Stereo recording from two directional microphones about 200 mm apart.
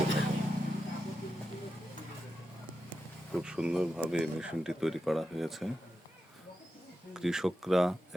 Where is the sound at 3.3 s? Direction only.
5° right (ahead or behind).